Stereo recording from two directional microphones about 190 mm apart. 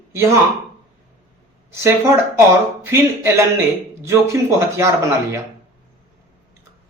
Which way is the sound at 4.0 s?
15° right (ahead or behind).